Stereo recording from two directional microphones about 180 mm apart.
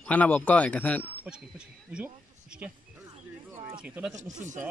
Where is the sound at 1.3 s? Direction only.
5° right (ahead or behind).